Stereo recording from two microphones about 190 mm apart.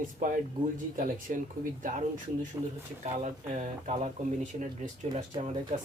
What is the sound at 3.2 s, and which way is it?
Speech, 40° right (ahead or behind).